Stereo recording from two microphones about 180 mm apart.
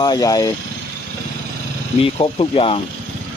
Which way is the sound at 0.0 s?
20° left (ahead or behind).